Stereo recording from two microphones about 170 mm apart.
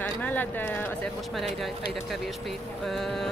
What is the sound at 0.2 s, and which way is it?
Speech, 10° left (ahead or behind).